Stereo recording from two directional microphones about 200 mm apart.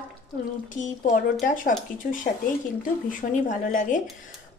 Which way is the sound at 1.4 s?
40° left (ahead or behind).